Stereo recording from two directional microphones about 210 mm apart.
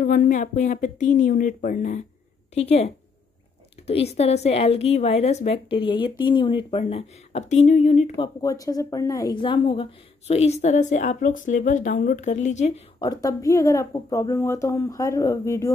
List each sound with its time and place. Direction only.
0.0 s a woman's voice: 40° left (ahead or behind)
8.4 s a woman's voice: 15° left (ahead or behind)
13.1 s speech: 15° left (ahead or behind)